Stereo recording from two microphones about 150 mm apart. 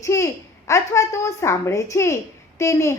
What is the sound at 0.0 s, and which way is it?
A woman's voice, 20° left (ahead or behind).